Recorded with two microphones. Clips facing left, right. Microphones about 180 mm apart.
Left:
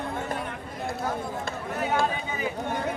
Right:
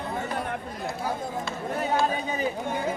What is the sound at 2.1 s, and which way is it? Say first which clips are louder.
Run: right 3 dB; 35° right (ahead or behind).